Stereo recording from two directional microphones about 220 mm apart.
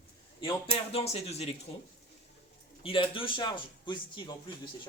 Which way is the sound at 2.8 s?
25° left (ahead or behind).